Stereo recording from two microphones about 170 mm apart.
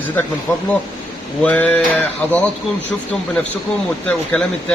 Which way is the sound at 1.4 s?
10° left (ahead or behind).